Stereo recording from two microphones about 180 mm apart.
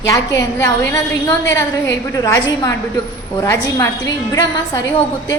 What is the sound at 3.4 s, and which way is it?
Speech, 15° left (ahead or behind).